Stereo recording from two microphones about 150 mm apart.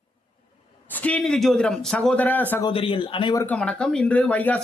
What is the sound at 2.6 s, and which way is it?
Speech, 35° left (ahead or behind).